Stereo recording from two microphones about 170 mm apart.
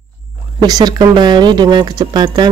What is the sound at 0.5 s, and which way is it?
Speech, 25° right (ahead or behind).